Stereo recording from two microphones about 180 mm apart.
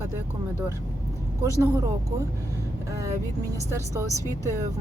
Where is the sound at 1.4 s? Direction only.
20° right (ahead or behind).